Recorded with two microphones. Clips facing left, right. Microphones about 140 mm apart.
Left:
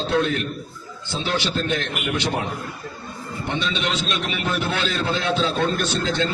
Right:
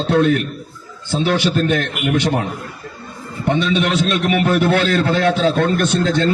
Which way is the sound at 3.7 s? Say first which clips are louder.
Right 8 dB; 60° right (ahead or behind).